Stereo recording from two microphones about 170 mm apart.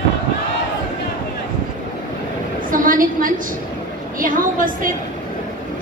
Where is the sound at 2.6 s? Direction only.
55° right (ahead or behind).